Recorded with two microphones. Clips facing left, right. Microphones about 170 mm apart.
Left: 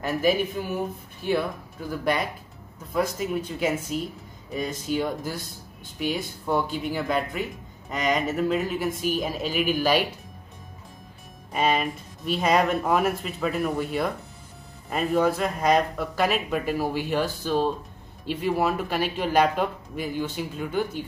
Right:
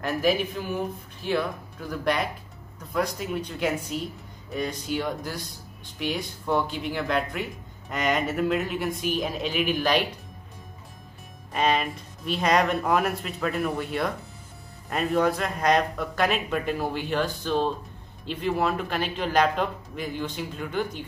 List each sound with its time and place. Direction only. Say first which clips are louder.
0.0 s a man's voice: left 1 dB; 5° left (ahead or behind)
11.5 s a man's voice: left 1 dB; 5° left (ahead or behind)